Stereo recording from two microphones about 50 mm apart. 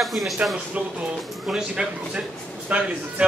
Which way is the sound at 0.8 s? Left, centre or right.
Right.